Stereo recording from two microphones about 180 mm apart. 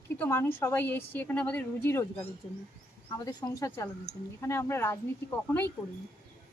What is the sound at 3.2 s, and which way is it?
A woman's voice, 20° left (ahead or behind).